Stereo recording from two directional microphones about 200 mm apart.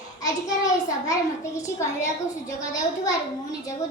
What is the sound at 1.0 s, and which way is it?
A child's voice, 15° left (ahead or behind).